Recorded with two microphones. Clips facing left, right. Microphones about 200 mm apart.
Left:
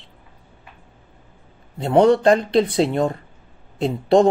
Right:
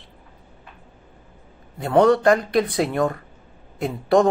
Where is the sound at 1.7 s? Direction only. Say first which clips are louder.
Left 1 dB; 25° left (ahead or behind).